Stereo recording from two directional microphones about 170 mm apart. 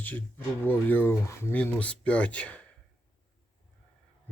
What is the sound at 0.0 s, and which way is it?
Speech, 10° left (ahead or behind).